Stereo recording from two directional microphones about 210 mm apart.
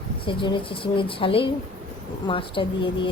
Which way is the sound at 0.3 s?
25° left (ahead or behind).